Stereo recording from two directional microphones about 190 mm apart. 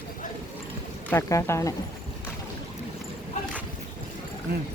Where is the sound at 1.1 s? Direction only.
15° left (ahead or behind).